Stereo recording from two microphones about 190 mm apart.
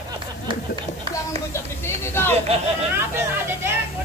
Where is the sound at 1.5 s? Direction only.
15° left (ahead or behind).